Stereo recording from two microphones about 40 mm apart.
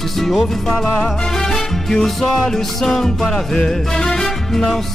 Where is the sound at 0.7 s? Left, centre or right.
Centre.